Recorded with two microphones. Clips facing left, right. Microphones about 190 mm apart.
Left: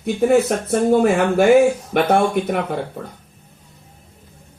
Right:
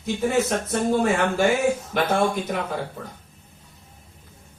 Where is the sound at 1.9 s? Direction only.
65° left (ahead or behind).